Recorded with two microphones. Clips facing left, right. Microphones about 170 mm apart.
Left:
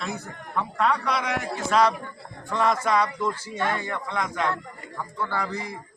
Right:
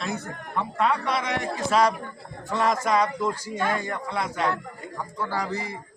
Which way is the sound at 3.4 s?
10° right (ahead or behind).